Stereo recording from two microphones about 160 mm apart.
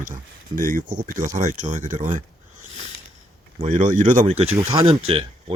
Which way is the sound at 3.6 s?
45° right (ahead or behind).